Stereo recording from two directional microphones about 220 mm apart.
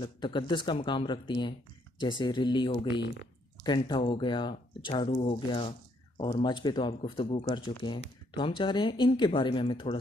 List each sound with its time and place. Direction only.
0.0 s speech: 20° left (ahead or behind)